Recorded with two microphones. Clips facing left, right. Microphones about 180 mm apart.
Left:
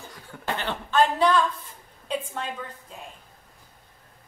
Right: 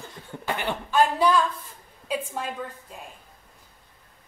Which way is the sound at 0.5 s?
10° right (ahead or behind).